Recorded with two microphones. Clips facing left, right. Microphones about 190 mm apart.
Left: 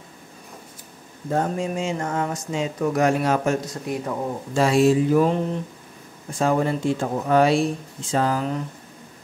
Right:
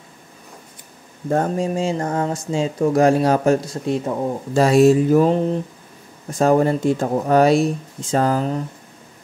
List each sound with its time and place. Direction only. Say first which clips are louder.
1.3 s speech: right 4 dB; 45° right (ahead or behind)
1.7 s speech: right 4 dB; 35° right (ahead or behind)
4.6 s speech: right 4 dB; 40° right (ahead or behind)